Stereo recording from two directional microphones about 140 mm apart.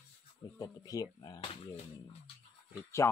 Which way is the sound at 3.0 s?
20° left (ahead or behind).